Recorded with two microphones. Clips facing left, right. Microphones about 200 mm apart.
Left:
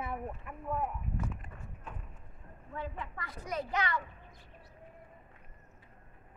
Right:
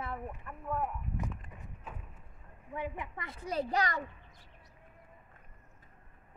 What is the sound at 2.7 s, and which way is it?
A woman's voice, 15° right (ahead or behind).